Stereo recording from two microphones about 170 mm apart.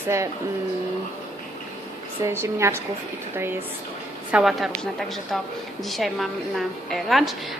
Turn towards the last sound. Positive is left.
turn(degrees=0)  # may be behind; listen again after turning